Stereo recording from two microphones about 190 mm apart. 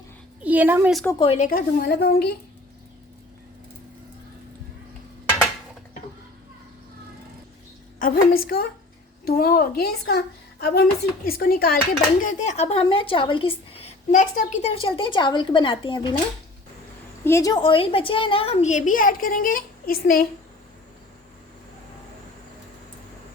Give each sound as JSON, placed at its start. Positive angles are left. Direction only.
{"t": 0.4, "sound": "a woman's voice", "side_deg": -10}
{"t": 1.2, "sound": "a woman's voice", "side_deg": 35}
{"t": 1.5, "sound": "speech", "side_deg": 50}
{"t": 7.9, "sound": "a woman's voice", "side_deg": 50}
{"t": 14.8, "sound": "a woman's voice", "side_deg": 30}
{"t": 17.2, "sound": "a woman's voice", "side_deg": 15}